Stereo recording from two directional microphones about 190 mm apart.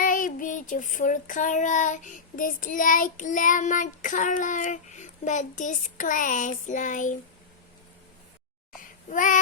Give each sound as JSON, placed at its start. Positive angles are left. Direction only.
{"t": 0.0, "sound": "child singing", "side_deg": 45}
{"t": 8.7, "sound": "babbling", "side_deg": 45}